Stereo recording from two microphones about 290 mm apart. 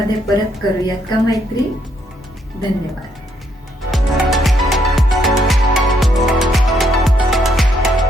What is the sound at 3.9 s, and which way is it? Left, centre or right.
Music, centre.